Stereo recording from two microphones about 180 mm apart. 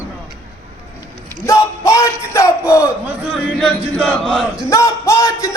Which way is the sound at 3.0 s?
5° right (ahead or behind).